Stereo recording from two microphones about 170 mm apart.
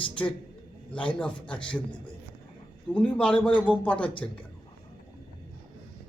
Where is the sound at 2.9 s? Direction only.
5° left (ahead or behind).